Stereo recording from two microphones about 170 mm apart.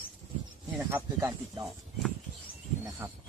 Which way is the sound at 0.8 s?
10° right (ahead or behind).